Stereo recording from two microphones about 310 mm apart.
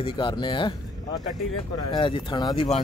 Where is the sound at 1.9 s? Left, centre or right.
Centre.